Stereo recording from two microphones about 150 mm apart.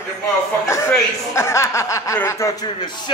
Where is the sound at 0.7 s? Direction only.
20° left (ahead or behind).